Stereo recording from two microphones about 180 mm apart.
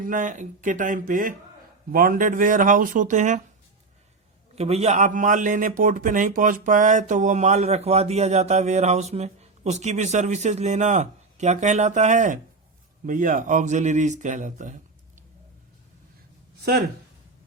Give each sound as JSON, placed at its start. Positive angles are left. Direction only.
{"t": 0.0, "sound": "speech", "side_deg": -45}
{"t": 4.5, "sound": "a man's voice", "side_deg": -35}